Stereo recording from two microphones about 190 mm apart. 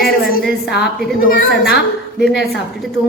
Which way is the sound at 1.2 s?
50° left (ahead or behind).